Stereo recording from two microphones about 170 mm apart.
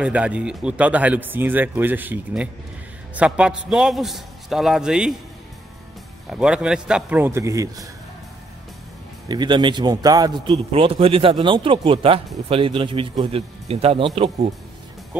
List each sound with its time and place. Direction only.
0.0 s a man's voice: 5° right (ahead or behind)
6.3 s speech: 5° right (ahead or behind)
9.3 s a man's voice: 25° right (ahead or behind)